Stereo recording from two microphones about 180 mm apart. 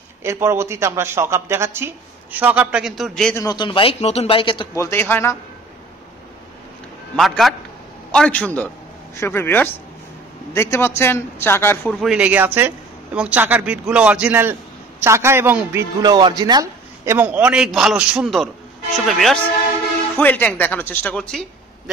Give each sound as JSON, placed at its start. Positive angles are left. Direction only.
{"t": 0.2, "sound": "a man's voice", "side_deg": -15}
{"t": 3.3, "sound": "a man's voice", "side_deg": 20}
{"t": 4.7, "sound": "a woman's voice", "side_deg": 15}
{"t": 7.2, "sound": "a man's voice", "side_deg": 0}
{"t": 16.0, "sound": "a man's voice", "side_deg": -25}